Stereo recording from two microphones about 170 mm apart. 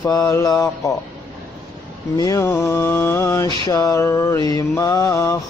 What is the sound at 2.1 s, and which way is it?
Mantra, 20° left (ahead or behind).